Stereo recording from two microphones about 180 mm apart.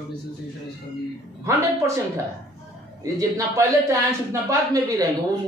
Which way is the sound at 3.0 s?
20° right (ahead or behind).